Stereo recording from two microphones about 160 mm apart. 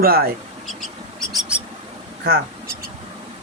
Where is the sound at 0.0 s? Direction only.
70° right (ahead or behind).